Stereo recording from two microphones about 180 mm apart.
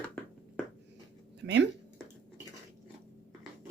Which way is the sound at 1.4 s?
75° right (ahead or behind).